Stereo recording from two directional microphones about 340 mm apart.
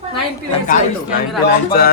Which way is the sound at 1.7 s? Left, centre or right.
Left.